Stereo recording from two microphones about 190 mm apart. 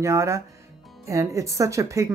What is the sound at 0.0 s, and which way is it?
Speech, 15° right (ahead or behind).